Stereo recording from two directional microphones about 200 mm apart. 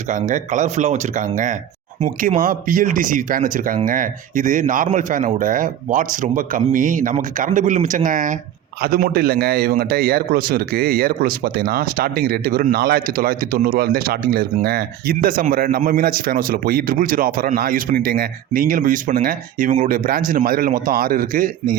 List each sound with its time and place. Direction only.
0.1 s a man's voice: 40° right (ahead or behind)